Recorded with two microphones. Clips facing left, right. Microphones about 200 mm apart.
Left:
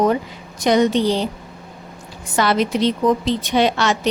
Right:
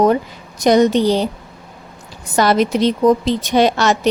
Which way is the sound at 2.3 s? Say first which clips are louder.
Right 3 dB; 40° right (ahead or behind).